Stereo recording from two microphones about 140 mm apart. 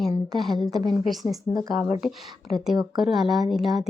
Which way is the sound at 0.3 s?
Centre (ahead or behind).